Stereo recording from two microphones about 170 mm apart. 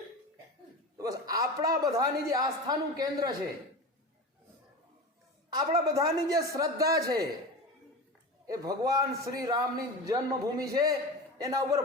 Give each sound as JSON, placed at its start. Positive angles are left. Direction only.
{"t": 0.9, "sound": "a sound", "side_deg": -20}
{"t": 2.0, "sound": "a man's voice", "side_deg": -20}
{"t": 5.5, "sound": "a man's voice", "side_deg": -20}
{"t": 8.4, "sound": "a man's voice", "side_deg": -20}